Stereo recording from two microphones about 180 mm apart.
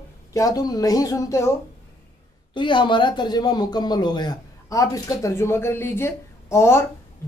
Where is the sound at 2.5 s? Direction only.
25° left (ahead or behind).